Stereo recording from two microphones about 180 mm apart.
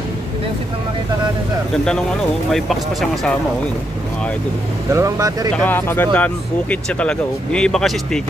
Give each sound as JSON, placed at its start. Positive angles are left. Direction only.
{"t": 2.5, "sound": "speech", "side_deg": 0}
{"t": 4.9, "sound": "speech", "side_deg": -20}
{"t": 5.6, "sound": "speech", "side_deg": 10}